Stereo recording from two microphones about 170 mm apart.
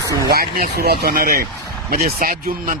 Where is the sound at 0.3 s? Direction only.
65° right (ahead or behind).